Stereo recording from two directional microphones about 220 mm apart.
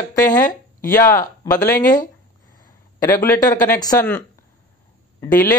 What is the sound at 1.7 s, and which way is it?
Speech, 40° left (ahead or behind).